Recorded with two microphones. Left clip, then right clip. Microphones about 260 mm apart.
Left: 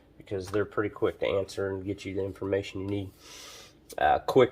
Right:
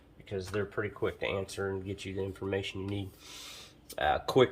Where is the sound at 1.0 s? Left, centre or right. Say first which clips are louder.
Left 6 dB; left.